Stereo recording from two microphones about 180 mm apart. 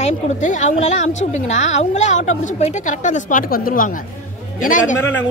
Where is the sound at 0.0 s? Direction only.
40° left (ahead or behind).